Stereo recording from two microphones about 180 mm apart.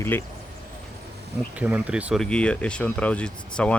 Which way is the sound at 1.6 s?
10° right (ahead or behind).